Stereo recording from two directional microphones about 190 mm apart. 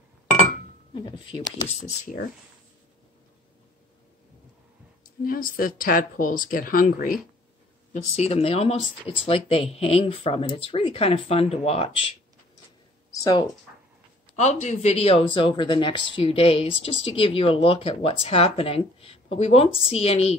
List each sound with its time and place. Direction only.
0.9 s speech: 25° left (ahead or behind)
2.0 s speech: 45° left (ahead or behind)
5.2 s speech: 50° left (ahead or behind)
7.9 s speech: 35° left (ahead or behind)
13.1 s speech: 20° left (ahead or behind)
14.3 s speech: 35° left (ahead or behind)